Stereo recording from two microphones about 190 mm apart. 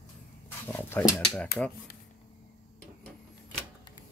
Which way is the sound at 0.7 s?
10° left (ahead or behind).